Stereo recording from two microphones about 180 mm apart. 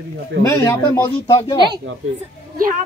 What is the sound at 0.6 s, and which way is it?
Speech, 15° left (ahead or behind).